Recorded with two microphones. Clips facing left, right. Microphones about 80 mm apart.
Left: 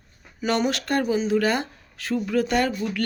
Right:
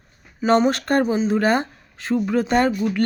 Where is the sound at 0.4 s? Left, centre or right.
Right.